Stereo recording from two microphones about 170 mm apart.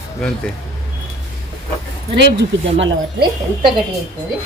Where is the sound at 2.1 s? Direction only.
90° right.